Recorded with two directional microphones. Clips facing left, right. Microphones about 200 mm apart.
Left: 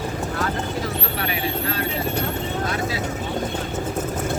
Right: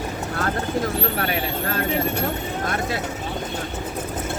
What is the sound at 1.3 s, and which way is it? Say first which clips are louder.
Vehicle: even; 50° right (ahead or behind).